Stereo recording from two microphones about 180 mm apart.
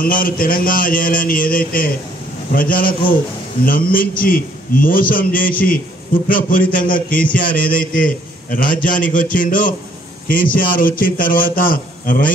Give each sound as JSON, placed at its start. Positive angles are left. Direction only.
{"t": 0.0, "sound": "a man's voice", "side_deg": 50}